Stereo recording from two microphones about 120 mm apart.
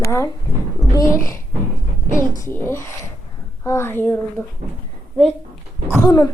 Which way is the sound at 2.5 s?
20° left (ahead or behind).